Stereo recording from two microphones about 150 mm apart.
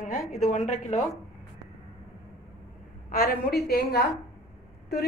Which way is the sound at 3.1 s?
80° left.